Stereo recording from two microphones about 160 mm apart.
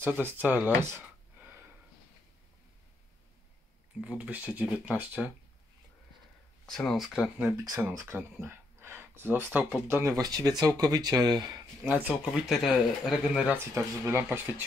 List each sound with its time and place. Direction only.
0.0 s speech: 10° right (ahead or behind)
4.0 s speech: 10° right (ahead or behind)
6.6 s speech: 5° left (ahead or behind)
7.5 s speech: 20° right (ahead or behind)
11.9 s speech: 10° right (ahead or behind)
13.7 s speech: 15° right (ahead or behind)